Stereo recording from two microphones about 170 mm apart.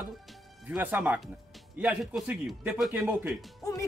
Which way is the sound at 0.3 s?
5° right (ahead or behind).